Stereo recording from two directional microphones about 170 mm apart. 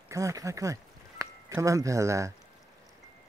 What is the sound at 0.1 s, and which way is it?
Speech, 20° right (ahead or behind).